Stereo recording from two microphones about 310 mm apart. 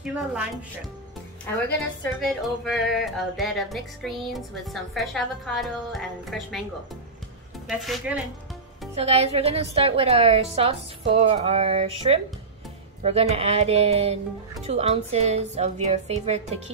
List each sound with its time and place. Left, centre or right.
0.0 s speech: centre
1.5 s a woman's voice: centre
7.6 s speech: centre
8.9 s speech: centre